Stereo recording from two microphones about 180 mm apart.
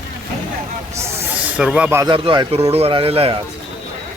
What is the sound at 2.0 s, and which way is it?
A man's voice, 25° right (ahead or behind).